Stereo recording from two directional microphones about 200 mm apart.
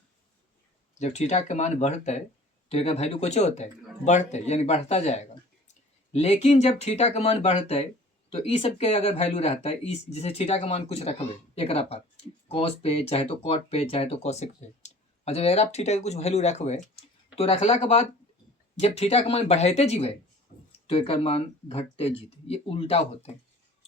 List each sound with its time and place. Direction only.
0.9 s speech: 35° left (ahead or behind)
20.5 s a sound: 35° left (ahead or behind)
20.8 s speech: 30° left (ahead or behind)